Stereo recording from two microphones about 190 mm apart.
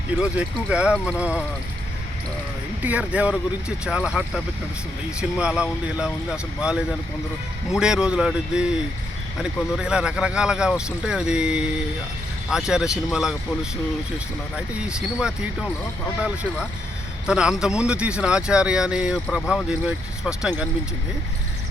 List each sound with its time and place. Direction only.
0.2 s speech: 5° right (ahead or behind)
2.8 s speech: 5° right (ahead or behind)
5.4 s speech: 5° right (ahead or behind)
19.8 s speech: 5° right (ahead or behind)